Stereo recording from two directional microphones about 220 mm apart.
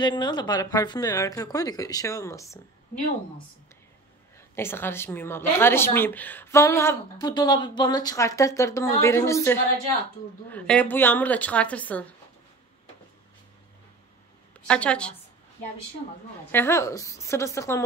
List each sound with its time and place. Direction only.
0.0 s a woman's voice: 20° left (ahead or behind)
4.6 s a woman's voice: 10° left (ahead or behind)
14.7 s a woman's voice: 5° left (ahead or behind)
16.5 s a woman's voice: 10° left (ahead or behind)